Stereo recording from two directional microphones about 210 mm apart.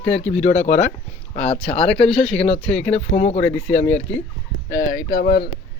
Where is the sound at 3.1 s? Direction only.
35° left (ahead or behind).